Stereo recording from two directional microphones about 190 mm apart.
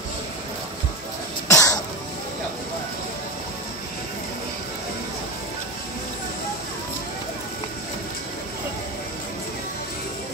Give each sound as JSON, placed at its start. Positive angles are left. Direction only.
{"t": 1.5, "sound": "throat clearing", "side_deg": 20}